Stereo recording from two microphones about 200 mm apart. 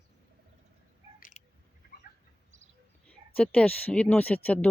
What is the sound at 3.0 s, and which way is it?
Speech, 5° left (ahead or behind).